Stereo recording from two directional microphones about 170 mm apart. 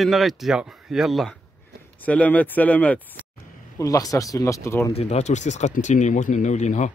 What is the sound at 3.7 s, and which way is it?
Speech, 20° left (ahead or behind).